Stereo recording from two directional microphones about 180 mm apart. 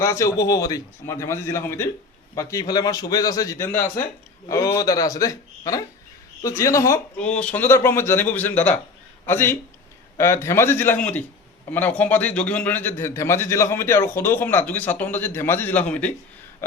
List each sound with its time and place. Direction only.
0.0 s a man's voice: 15° left (ahead or behind)